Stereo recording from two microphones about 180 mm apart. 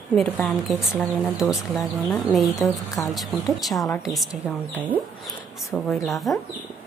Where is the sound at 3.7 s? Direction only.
20° left (ahead or behind).